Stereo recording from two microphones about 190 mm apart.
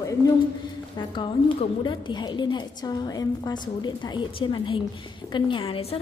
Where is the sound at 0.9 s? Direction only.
25° left (ahead or behind).